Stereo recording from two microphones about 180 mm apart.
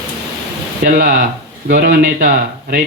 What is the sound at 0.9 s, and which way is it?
Speech, 55° right (ahead or behind).